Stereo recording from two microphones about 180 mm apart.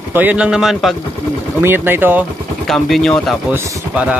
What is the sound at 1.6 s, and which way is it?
Speech, 10° right (ahead or behind).